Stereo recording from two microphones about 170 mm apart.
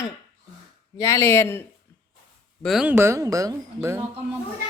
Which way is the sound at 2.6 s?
Centre (ahead or behind).